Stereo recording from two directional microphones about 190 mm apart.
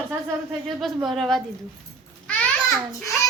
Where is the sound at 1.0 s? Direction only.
Centre (ahead or behind).